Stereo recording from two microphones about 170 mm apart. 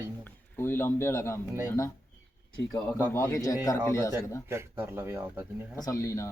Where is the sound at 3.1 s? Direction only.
20° left (ahead or behind).